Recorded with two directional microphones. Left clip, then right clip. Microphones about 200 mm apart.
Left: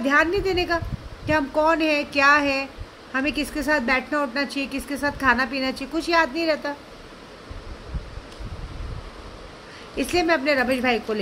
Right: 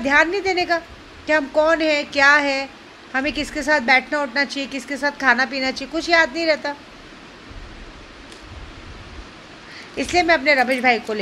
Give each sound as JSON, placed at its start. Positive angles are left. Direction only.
{"t": 0.0, "sound": "a woman's voice", "side_deg": 15}
{"t": 9.9, "sound": "a woman's voice", "side_deg": 15}